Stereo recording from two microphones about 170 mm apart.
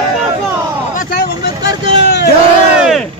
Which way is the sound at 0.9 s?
60° left (ahead or behind).